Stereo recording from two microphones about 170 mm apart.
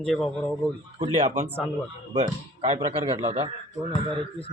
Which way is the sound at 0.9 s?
35° right (ahead or behind).